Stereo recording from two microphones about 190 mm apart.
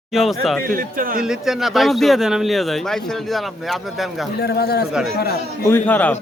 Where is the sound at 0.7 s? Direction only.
45° right (ahead or behind).